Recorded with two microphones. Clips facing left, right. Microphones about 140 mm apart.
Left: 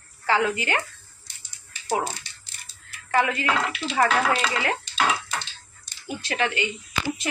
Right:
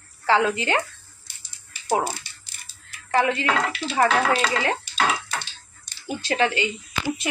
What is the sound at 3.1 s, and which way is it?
A woman's voice, 30° right (ahead or behind).